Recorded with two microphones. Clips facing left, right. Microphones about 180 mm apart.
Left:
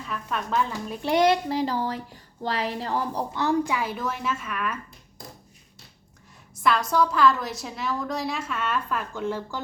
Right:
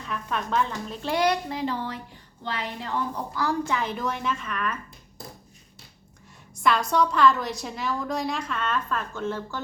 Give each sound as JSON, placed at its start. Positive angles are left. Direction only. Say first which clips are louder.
{"t": 0.0, "sound": "a woman's voice", "louder": "even", "side_deg": 5}
{"t": 3.3, "sound": "speech", "louder": "left 3 dB", "side_deg": 20}
{"t": 3.7, "sound": "a woman's voice", "louder": "even", "side_deg": 10}
{"t": 6.6, "sound": "a woman's voice", "louder": "even", "side_deg": 0}